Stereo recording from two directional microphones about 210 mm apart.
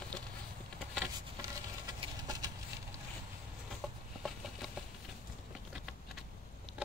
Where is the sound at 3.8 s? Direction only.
Centre (ahead or behind).